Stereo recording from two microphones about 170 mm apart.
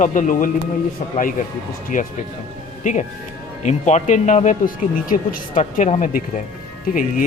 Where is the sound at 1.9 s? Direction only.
50° left (ahead or behind).